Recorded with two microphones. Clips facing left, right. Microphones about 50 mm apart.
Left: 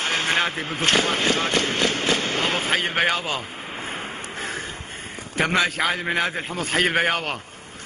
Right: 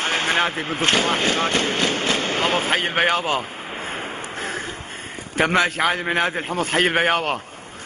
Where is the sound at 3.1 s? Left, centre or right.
Centre.